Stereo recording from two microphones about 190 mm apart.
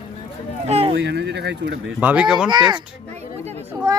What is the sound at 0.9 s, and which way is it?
Speech, 65° right (ahead or behind).